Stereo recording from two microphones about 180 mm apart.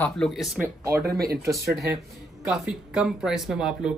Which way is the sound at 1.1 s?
60° right (ahead or behind).